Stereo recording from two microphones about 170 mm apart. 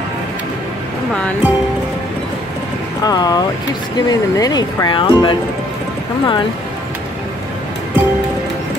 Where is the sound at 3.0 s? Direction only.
25° left (ahead or behind).